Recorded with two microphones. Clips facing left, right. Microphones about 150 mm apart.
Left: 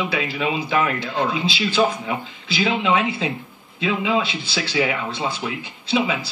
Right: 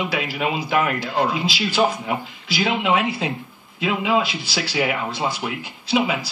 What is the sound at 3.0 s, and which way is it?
Speech, 25° left (ahead or behind).